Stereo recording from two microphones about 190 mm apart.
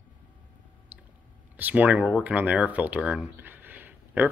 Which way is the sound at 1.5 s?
10° right (ahead or behind).